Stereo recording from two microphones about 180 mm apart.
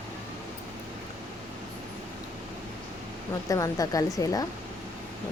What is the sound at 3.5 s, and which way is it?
Speech, 20° left (ahead or behind).